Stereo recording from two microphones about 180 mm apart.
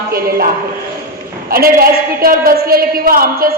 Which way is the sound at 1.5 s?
55° right (ahead or behind).